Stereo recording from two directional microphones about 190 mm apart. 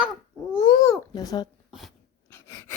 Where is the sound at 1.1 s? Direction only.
20° left (ahead or behind).